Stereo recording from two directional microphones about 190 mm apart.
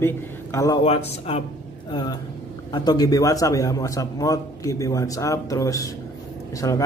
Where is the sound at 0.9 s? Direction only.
30° left (ahead or behind).